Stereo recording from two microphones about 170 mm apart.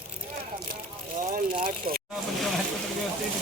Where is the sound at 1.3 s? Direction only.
55° right (ahead or behind).